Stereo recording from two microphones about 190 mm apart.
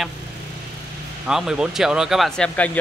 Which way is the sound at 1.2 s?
5° right (ahead or behind).